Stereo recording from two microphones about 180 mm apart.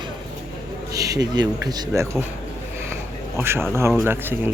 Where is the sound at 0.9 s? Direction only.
20° right (ahead or behind).